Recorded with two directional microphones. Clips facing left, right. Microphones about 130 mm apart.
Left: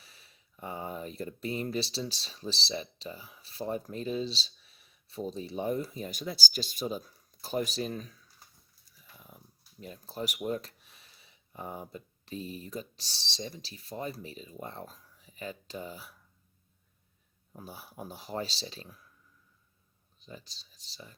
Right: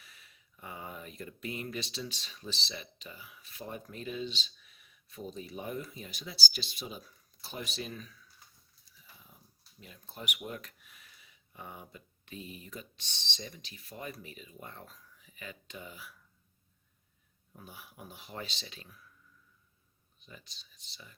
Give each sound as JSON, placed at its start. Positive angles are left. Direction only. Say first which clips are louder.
{"t": 0.0, "sound": "speech", "louder": "even", "side_deg": 30}
{"t": 9.8, "sound": "speech", "louder": "left 7 dB", "side_deg": 40}
{"t": 17.5, "sound": "speech", "louder": "left 5 dB", "side_deg": 35}
{"t": 20.1, "sound": "speech", "louder": "left 6 dB", "side_deg": 35}